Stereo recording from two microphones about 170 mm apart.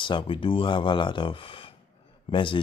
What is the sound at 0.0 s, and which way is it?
Speech, 30° left (ahead or behind).